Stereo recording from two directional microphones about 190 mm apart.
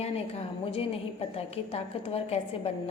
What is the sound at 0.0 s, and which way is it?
A woman's voice, 30° left (ahead or behind).